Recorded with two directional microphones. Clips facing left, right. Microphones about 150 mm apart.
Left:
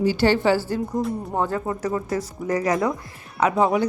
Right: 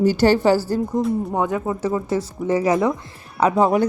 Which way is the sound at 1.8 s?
25° right (ahead or behind).